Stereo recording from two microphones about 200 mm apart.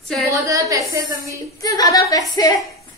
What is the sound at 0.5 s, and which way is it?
Speech, 15° right (ahead or behind).